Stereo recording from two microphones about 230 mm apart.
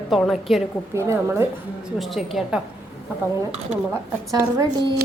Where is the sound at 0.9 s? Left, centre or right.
Centre.